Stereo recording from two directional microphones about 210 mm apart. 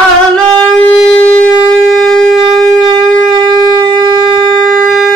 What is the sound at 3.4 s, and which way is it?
Shofar, 20° right (ahead or behind).